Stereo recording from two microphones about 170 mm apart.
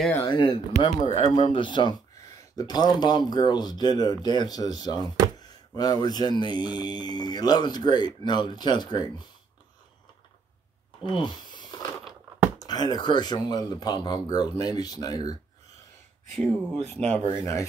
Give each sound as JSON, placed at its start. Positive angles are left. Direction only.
{"t": 0.2, "sound": "speech", "side_deg": 25}
{"t": 0.8, "sound": "speech", "side_deg": 40}
{"t": 1.5, "sound": "speech", "side_deg": 30}
{"t": 11.2, "sound": "a sound", "side_deg": 25}
{"t": 12.5, "sound": "speech", "side_deg": 25}
{"t": 16.3, "sound": "speech", "side_deg": 5}